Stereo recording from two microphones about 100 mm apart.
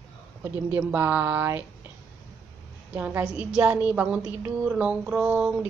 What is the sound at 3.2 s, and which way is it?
A woman's voice, 10° right (ahead or behind).